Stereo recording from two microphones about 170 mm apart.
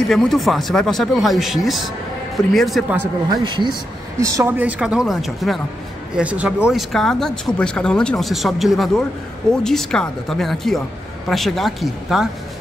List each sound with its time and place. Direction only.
0.1 s speech: centre (ahead or behind)
3.3 s speech: 25° right (ahead or behind); by 12.3 s centre (ahead or behind)